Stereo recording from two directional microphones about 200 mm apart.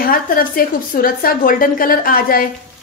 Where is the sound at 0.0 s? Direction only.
45° left (ahead or behind).